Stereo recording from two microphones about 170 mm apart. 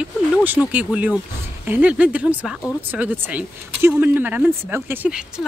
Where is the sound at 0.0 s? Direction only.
10° right (ahead or behind).